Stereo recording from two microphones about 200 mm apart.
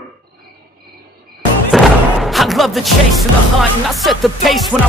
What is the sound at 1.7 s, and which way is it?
Thump, centre (ahead or behind).